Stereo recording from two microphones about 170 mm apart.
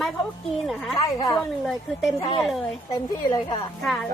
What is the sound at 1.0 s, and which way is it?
Speech, 20° left (ahead or behind).